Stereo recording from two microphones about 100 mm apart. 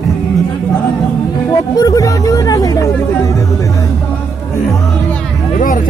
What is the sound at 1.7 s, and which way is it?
Music, 40° left (ahead or behind).